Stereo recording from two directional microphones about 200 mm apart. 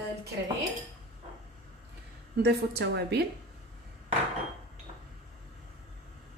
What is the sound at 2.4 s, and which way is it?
Speech, 55° right (ahead or behind).